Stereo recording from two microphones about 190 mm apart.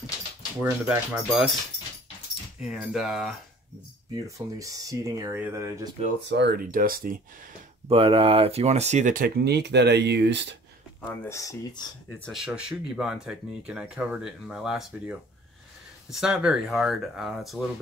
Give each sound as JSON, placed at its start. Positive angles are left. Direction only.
{"t": 0.6, "sound": "speech", "side_deg": -10}
{"t": 2.6, "sound": "speech", "side_deg": 0}
{"t": 4.1, "sound": "speech", "side_deg": -20}
{"t": 6.2, "sound": "speech", "side_deg": -65}
{"t": 7.9, "sound": "speech", "side_deg": -30}
{"t": 11.2, "sound": "speech", "side_deg": 15}
{"t": 12.2, "sound": "speech", "side_deg": 0}